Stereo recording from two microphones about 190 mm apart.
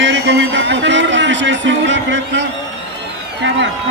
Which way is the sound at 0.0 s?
75° right (ahead or behind).